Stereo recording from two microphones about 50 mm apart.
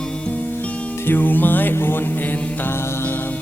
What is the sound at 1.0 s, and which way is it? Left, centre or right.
Music, left.